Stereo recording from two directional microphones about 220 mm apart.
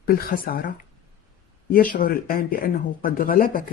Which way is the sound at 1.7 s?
40° left (ahead or behind).